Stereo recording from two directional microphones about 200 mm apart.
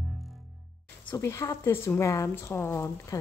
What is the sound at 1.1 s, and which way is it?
Speech, 15° left (ahead or behind).